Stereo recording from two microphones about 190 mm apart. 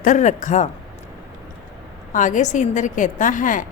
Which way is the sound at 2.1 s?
40° left (ahead or behind).